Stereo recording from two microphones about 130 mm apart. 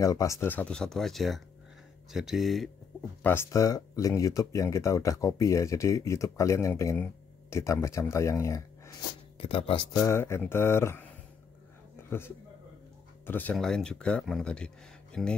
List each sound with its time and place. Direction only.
0.0 s speech: 25° left (ahead or behind); by 2.7 s centre (ahead or behind)
3.2 s speech: 15° left (ahead or behind)
3.5 s speech: 25° left (ahead or behind)
9.4 s speech: 45° left (ahead or behind)
9.9 s speech: 20° left (ahead or behind)
13.2 s speech: 15° left (ahead or behind)